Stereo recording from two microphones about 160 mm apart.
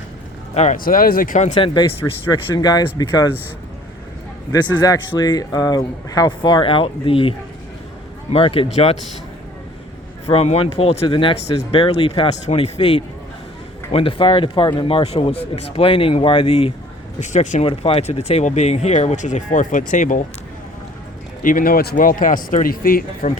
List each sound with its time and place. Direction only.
0.5 s speech: 45° left (ahead or behind)
0.9 s speech: 65° left (ahead or behind)
1.5 s speech: 30° left (ahead or behind)
4.5 s speech: 25° left (ahead or behind); by 9.0 s 40° left (ahead or behind)
10.2 s speech: 40° left (ahead or behind)
17.2 s speech: 50° left (ahead or behind)
17.7 s speech: 35° left (ahead or behind); by 20.2 s 55° left (ahead or behind)
21.4 s speech: 65° left (ahead or behind)